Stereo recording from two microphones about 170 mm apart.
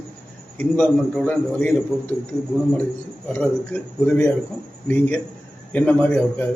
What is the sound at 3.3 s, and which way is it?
A man's voice, 10° left (ahead or behind).